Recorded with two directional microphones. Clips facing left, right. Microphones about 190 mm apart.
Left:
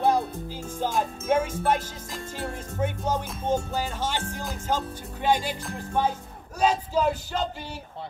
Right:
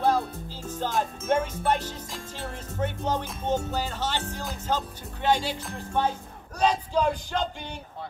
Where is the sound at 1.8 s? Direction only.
45° left (ahead or behind).